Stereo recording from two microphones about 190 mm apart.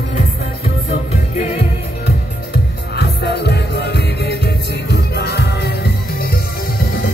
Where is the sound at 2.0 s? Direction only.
60° left (ahead or behind).